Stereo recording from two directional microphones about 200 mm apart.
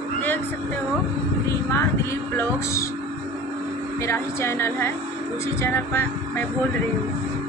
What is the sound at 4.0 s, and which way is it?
A woman's voice, 15° left (ahead or behind).